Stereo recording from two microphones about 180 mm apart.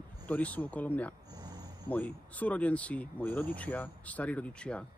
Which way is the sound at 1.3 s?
20° right (ahead or behind).